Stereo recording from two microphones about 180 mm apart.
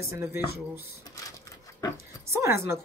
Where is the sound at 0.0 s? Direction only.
15° right (ahead or behind).